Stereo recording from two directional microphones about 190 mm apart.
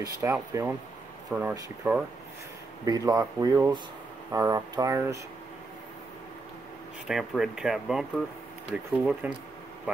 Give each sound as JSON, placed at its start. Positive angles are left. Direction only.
{"t": 0.0, "sound": "speech", "side_deg": -15}
{"t": 7.1, "sound": "speech", "side_deg": 0}